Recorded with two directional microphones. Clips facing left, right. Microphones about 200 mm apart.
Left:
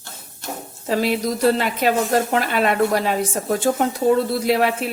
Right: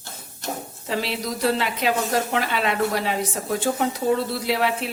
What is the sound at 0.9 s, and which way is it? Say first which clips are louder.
A woman's voice: left 7 dB; 45° left (ahead or behind).